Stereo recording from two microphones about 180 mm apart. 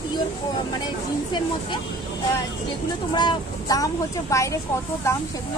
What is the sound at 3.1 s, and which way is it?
A woman's voice, 25° left (ahead or behind).